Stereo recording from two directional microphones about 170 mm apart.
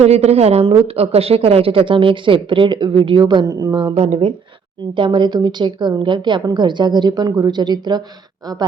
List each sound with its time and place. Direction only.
0.0 s a woman's voice: 40° right (ahead or behind)
4.0 s a woman's voice: 40° right (ahead or behind)
4.9 s a woman's voice: 30° right (ahead or behind)